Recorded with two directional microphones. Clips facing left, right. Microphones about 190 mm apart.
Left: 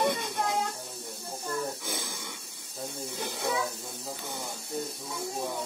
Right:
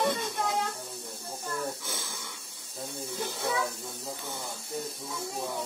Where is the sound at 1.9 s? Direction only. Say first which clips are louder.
Left 3 dB; 15° left (ahead or behind).